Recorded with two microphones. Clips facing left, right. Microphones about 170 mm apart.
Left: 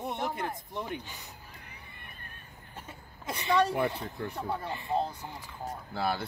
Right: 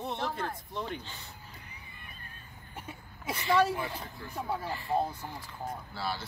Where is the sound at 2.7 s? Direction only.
10° right (ahead or behind).